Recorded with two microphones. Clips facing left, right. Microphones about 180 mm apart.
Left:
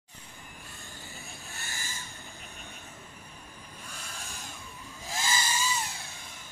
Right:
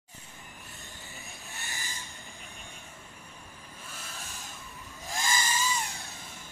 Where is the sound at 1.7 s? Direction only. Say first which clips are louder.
Even; 15° right (ahead or behind).